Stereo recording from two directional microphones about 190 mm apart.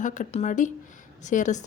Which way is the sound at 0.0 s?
40° left (ahead or behind).